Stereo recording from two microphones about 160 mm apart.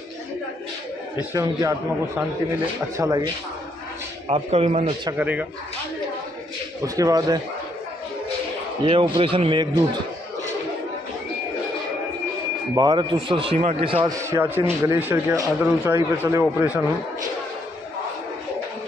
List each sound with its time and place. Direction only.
1.3 s a man's voice: 20° right (ahead or behind)
4.3 s a man's voice: 40° right (ahead or behind)
5.1 s speech: 10° right (ahead or behind)
6.8 s a man's voice: 20° right (ahead or behind)
8.8 s a man's voice: 30° right (ahead or behind)
12.7 s a man's voice: 25° right (ahead or behind)
13.6 s a man's voice: 45° right (ahead or behind)
13.8 s a man's voice: 35° right (ahead or behind)
14.1 s speech: 15° right (ahead or behind)